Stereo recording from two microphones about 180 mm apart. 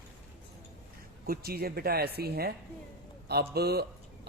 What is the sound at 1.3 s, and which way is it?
A man's voice, 60° right (ahead or behind).